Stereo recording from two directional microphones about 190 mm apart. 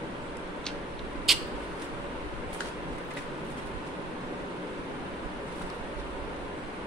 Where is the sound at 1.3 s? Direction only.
Centre (ahead or behind).